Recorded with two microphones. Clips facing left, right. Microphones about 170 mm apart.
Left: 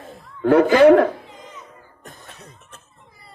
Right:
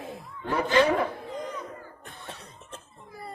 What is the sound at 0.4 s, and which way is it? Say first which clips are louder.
Speech: left 11 dB; 65° left (ahead or behind).